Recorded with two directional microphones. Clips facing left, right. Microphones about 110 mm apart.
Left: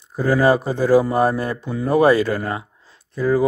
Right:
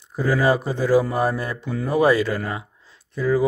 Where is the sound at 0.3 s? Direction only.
40° left (ahead or behind).